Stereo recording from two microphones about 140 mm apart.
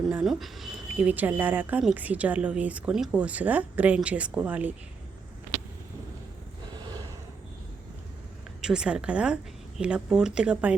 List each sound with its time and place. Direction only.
0.1 s a woman's voice: 5° right (ahead or behind)
8.6 s a woman's voice: 5° right (ahead or behind)